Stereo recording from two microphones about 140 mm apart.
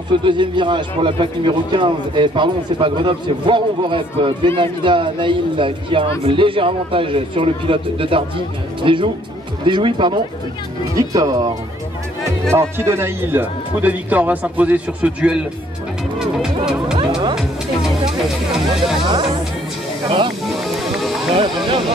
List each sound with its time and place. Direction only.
0.1 s speech: 35° right (ahead or behind)
12.5 s speech: 15° right (ahead or behind)
16.2 s music: 5° right (ahead or behind)
19.0 s music: 30° right (ahead or behind)
20.6 s music: centre (ahead or behind)
21.6 s speech: 35° right (ahead or behind)